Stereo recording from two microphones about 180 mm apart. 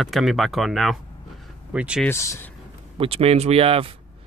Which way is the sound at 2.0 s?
15° left (ahead or behind).